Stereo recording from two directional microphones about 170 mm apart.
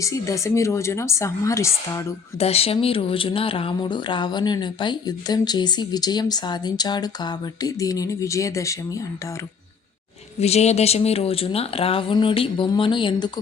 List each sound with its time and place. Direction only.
0.0 s a woman's voice: 20° left (ahead or behind)
2.4 s speech: 35° left (ahead or behind); by 9.0 s 20° left (ahead or behind)
10.4 s speech: 40° left (ahead or behind)